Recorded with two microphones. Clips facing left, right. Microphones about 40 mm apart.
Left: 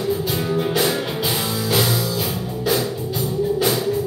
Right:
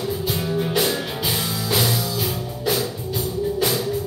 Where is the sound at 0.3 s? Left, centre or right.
Centre.